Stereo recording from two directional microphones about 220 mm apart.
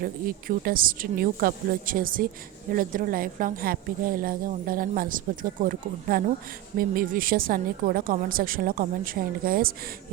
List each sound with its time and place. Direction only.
0.0 s a woman's voice: 40° right (ahead or behind)